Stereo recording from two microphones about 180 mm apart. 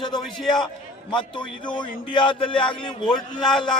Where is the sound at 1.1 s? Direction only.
25° left (ahead or behind).